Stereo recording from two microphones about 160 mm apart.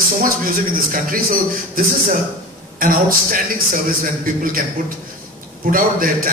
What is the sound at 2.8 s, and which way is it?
A man's voice, 60° right (ahead or behind).